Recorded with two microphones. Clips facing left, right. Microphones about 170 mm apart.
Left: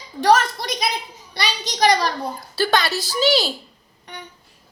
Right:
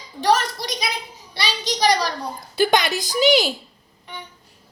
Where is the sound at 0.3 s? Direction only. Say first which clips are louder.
Left 3 dB; 50° left (ahead or behind).